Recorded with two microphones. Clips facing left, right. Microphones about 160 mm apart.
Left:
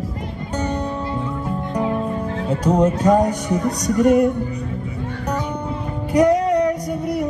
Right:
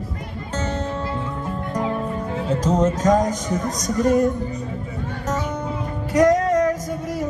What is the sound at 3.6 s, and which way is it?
Music, 65° left (ahead or behind).